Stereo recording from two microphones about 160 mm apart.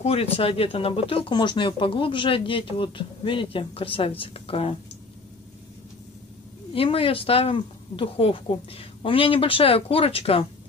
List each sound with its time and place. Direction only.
0.0 s speech: 40° left (ahead or behind)
6.7 s speech: 35° left (ahead or behind)